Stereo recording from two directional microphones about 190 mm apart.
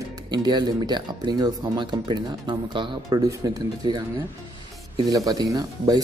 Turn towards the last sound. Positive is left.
turn(degrees=-20)  # may be behind; listen again after turning